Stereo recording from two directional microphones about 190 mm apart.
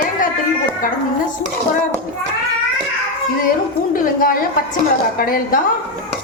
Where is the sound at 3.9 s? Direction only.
45° left (ahead or behind).